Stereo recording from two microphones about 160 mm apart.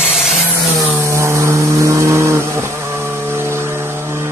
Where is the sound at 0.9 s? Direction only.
15° right (ahead or behind).